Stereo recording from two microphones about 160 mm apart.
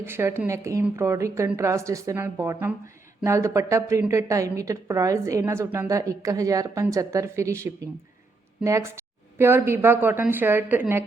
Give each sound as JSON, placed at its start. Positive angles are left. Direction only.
{"t": 0.0, "sound": "a woman's voice", "side_deg": -15}